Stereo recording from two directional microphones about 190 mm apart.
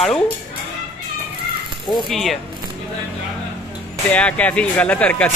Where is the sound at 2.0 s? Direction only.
Centre (ahead or behind).